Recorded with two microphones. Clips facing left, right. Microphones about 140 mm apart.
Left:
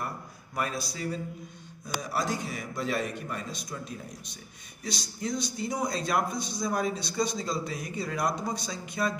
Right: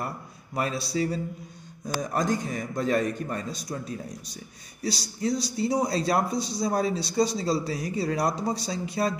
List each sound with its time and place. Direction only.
0.6 s speech: 30° right (ahead or behind)
2.0 s a man's voice: 45° right (ahead or behind)